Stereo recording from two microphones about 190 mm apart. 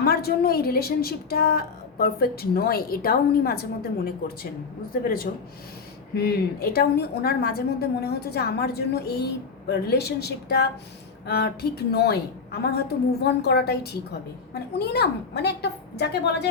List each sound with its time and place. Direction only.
0.0 s a woman's voice: 55° left (ahead or behind)